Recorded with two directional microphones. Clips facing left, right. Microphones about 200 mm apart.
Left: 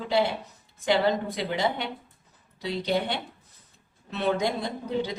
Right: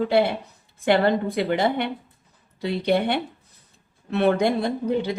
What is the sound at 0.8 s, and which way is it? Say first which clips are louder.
A woman's voice: right 4 dB; 60° right (ahead or behind).